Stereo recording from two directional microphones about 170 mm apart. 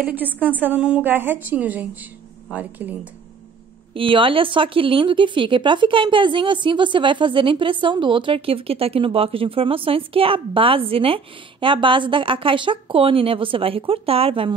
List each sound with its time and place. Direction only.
0.0 s a woman's voice: 10° right (ahead or behind)
3.9 s speech: 30° right (ahead or behind)